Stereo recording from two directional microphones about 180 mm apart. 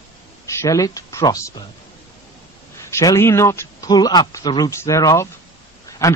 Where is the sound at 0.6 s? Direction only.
20° left (ahead or behind).